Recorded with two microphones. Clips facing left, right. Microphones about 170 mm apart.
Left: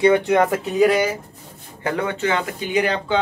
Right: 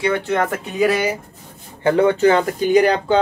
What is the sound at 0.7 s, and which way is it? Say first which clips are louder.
Speech: left 1 dB; 5° right (ahead or behind).